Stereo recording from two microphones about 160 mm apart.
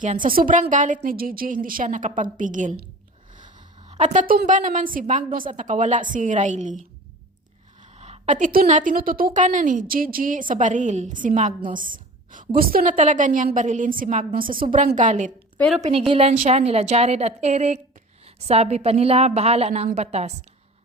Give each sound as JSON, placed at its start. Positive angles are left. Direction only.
{"t": 0.0, "sound": "a woman's voice", "side_deg": -55}
{"t": 3.3, "sound": "a sound", "side_deg": -45}
{"t": 4.4, "sound": "a woman's voice", "side_deg": -55}
{"t": 7.9, "sound": "a woman's voice", "side_deg": -45}
{"t": 15.5, "sound": "a woman's voice", "side_deg": 5}
{"t": 15.8, "sound": "a woman's voice", "side_deg": -35}
{"t": 16.3, "sound": "a woman's voice", "side_deg": -45}